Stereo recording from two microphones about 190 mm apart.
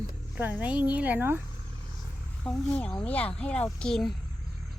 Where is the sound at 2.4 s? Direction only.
5° left (ahead or behind).